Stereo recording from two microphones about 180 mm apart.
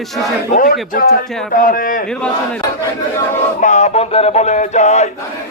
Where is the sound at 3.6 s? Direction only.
40° left (ahead or behind).